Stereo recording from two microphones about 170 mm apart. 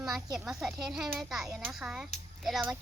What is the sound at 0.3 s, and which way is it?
Speech, 5° right (ahead or behind).